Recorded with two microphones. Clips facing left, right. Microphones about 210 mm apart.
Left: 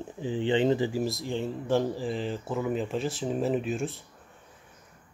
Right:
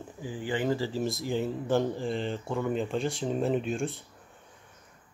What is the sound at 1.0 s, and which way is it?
Speech, centre (ahead or behind).